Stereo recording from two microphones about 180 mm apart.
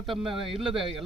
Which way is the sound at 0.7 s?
30° right (ahead or behind).